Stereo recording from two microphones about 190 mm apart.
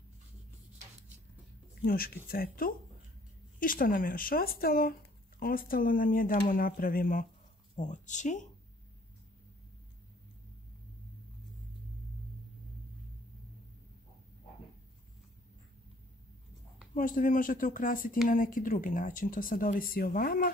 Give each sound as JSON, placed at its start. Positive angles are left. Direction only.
{"t": 1.8, "sound": "speech", "side_deg": 50}
{"t": 16.9, "sound": "speech", "side_deg": 45}